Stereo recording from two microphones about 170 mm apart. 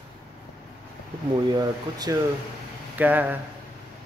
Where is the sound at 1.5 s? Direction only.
20° right (ahead or behind).